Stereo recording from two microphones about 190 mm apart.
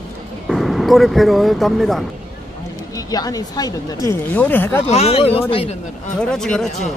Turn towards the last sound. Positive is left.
turn(degrees=0)  # may be behind; listen again after turning